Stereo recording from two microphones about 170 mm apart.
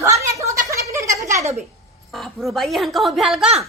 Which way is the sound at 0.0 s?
15° right (ahead or behind).